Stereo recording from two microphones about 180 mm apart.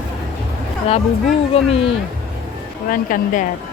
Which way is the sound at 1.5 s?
35° left (ahead or behind).